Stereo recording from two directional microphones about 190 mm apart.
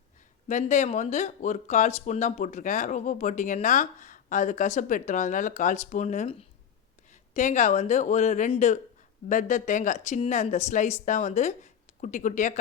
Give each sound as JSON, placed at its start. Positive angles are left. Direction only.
{"t": 0.4, "sound": "speech", "side_deg": 40}